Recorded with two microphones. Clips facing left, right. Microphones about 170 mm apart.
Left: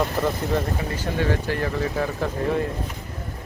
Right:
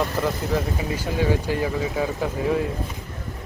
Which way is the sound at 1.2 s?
15° right (ahead or behind).